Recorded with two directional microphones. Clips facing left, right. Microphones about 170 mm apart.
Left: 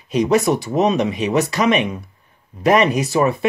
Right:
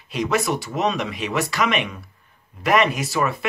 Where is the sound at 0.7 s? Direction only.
25° left (ahead or behind).